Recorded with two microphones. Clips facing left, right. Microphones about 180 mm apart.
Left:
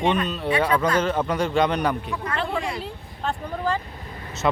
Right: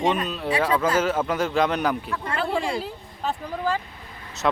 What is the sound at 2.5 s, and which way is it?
Speech, 30° right (ahead or behind).